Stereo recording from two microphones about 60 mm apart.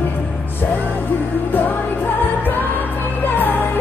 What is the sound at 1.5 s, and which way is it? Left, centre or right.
Music, left.